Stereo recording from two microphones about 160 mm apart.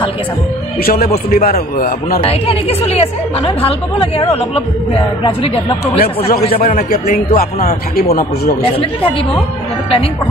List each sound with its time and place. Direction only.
0.8 s a man's voice: 70° left (ahead or behind)
2.2 s a woman's voice: 40° left (ahead or behind)
5.9 s a man's voice: 75° left (ahead or behind)